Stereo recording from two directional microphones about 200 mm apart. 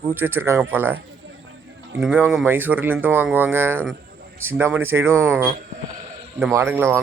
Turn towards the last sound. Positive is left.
turn(degrees=-10)  # may be behind; listen again after turning